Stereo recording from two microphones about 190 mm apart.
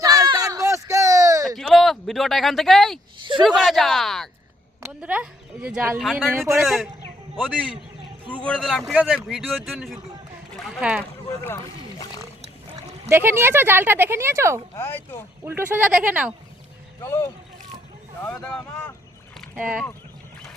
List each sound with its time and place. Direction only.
0.0 s a sound: 20° right (ahead or behind)
1.5 s speech: centre (ahead or behind)
11.4 s a sound: 20° left (ahead or behind)
13.1 s speech: 15° right (ahead or behind)
14.8 s speech: 10° left (ahead or behind)
15.4 s speech: 10° right (ahead or behind)
17.0 s speech: 15° left (ahead or behind)
18.3 s speech: 5° left (ahead or behind)